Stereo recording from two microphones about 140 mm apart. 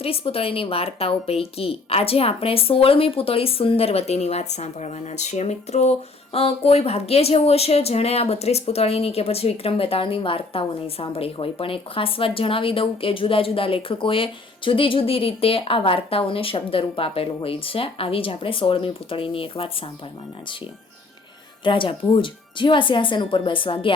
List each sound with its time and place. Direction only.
0.0 s speech: 45° left (ahead or behind)
21.6 s speech: 35° left (ahead or behind)